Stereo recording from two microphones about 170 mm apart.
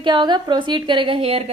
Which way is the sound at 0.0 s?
25° right (ahead or behind).